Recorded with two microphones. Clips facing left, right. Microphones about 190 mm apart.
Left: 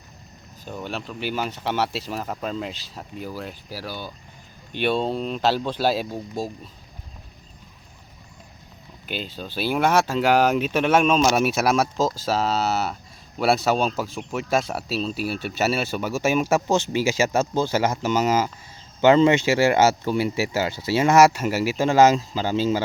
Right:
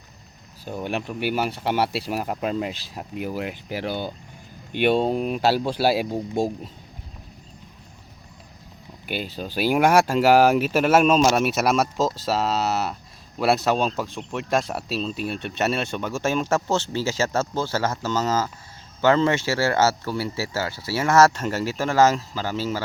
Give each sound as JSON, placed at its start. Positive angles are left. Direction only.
{"t": 0.6, "sound": "speech", "side_deg": -15}
{"t": 4.7, "sound": "speech", "side_deg": -15}
{"t": 6.4, "sound": "speech", "side_deg": -25}
{"t": 9.0, "sound": "speech", "side_deg": -10}